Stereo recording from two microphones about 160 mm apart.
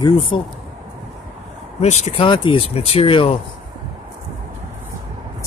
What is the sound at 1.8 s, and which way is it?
Speech, 40° left (ahead or behind).